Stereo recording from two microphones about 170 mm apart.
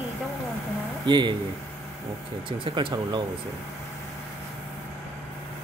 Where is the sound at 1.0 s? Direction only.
25° right (ahead or behind).